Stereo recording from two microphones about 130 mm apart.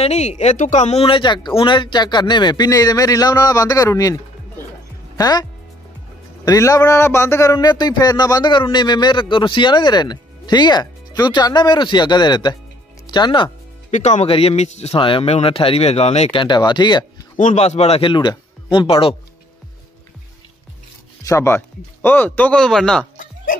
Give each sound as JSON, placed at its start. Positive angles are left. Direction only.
{"t": 0.0, "sound": "a man's voice", "side_deg": 60}
{"t": 13.8, "sound": "a man's voice", "side_deg": 60}
{"t": 15.0, "sound": "speech", "side_deg": 40}
{"t": 17.4, "sound": "a man's voice", "side_deg": 65}
{"t": 18.1, "sound": "speech", "side_deg": 35}
{"t": 21.2, "sound": "speech", "side_deg": 25}